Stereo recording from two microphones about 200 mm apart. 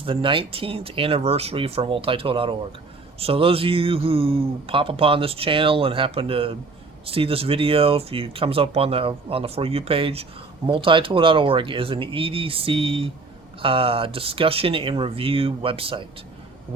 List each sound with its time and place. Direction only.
0.0 s speech: 25° right (ahead or behind)